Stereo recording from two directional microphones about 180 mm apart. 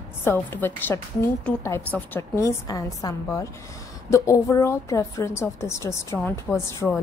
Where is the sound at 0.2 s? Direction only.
10° left (ahead or behind).